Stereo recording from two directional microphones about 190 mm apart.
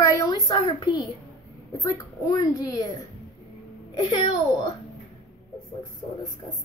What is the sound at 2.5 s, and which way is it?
Speech, 20° left (ahead or behind).